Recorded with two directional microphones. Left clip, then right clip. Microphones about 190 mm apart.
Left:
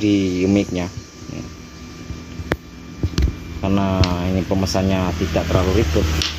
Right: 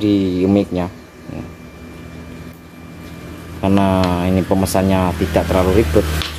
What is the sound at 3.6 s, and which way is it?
Speech, 20° right (ahead or behind).